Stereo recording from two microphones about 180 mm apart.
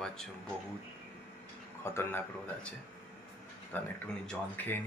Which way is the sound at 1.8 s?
10° left (ahead or behind).